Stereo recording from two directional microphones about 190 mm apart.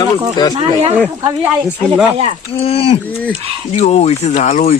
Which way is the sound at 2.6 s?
30° left (ahead or behind).